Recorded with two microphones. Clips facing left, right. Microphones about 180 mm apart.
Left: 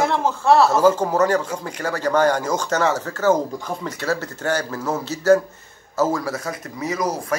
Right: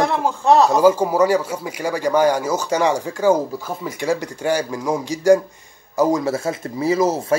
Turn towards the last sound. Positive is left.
turn(degrees=-25)  # may be behind; listen again after turning